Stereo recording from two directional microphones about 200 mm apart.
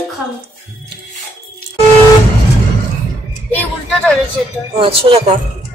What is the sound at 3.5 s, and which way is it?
Speech, 5° left (ahead or behind).